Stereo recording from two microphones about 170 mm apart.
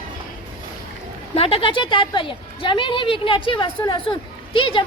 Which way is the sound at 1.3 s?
35° left (ahead or behind).